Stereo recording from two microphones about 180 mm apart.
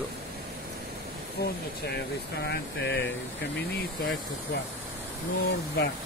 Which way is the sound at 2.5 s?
70° left (ahead or behind).